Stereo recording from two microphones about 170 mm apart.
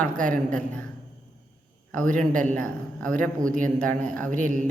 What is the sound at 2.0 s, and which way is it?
Speech, 50° right (ahead or behind).